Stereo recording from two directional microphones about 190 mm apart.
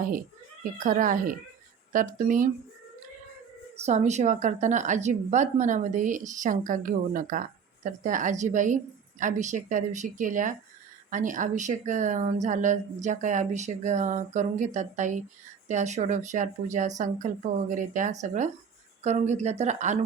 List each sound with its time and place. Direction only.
0.0 s speech: 45° right (ahead or behind)
3.8 s speech: 35° right (ahead or behind)